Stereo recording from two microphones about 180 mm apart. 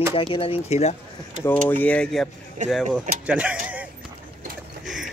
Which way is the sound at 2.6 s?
45° right (ahead or behind).